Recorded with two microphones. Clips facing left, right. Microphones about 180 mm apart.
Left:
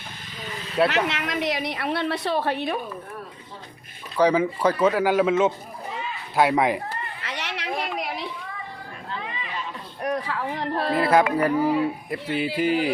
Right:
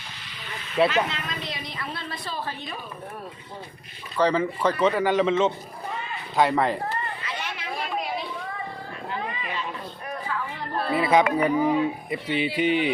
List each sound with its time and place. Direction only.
0.9 s a woman's voice: 70° left (ahead or behind)
4.2 s speech: 10° left (ahead or behind)
7.3 s chatter: 75° left (ahead or behind)
10.0 s a sound: 75° left (ahead or behind)
11.1 s speech: 5° left (ahead or behind)